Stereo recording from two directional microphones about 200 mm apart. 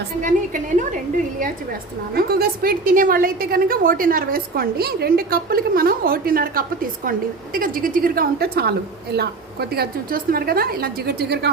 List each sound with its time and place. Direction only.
0.2 s a woman's voice: 40° right (ahead or behind)
2.1 s a woman's voice: 50° right (ahead or behind)